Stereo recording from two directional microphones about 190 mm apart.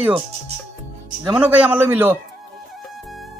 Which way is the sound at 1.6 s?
10° right (ahead or behind).